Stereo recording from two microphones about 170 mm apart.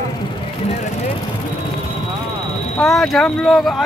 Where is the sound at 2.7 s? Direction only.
Centre (ahead or behind).